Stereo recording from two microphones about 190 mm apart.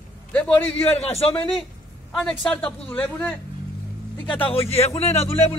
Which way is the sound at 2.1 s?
Centre (ahead or behind).